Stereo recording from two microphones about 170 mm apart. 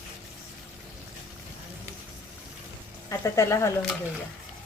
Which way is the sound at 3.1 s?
20° left (ahead or behind).